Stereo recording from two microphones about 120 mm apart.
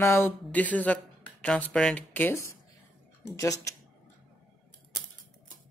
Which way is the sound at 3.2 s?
25° left (ahead or behind).